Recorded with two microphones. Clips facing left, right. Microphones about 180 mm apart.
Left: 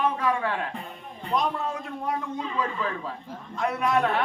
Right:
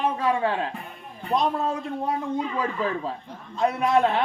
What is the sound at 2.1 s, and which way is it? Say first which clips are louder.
A man's voice: right 3 dB; 30° right (ahead or behind).